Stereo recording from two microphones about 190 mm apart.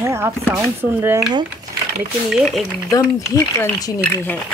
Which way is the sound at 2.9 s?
15° left (ahead or behind).